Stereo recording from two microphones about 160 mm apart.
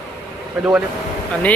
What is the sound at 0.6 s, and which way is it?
Speech, 5° right (ahead or behind).